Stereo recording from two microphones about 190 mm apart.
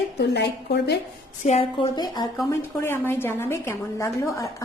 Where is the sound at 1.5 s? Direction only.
35° left (ahead or behind).